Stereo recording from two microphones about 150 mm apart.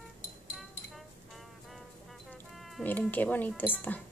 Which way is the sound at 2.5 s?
Centre (ahead or behind).